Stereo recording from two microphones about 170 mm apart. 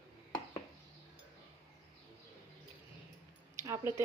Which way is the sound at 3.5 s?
15° right (ahead or behind).